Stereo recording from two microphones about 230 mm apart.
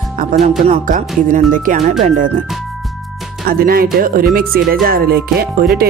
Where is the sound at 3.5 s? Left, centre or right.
Right.